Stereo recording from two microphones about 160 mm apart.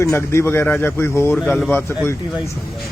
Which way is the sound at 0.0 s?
15° left (ahead or behind).